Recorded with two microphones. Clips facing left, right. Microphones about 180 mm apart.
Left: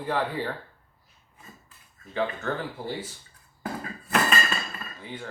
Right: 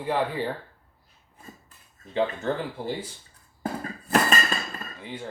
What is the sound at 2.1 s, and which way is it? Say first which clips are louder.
Speech: right 3 dB; 20° right (ahead or behind).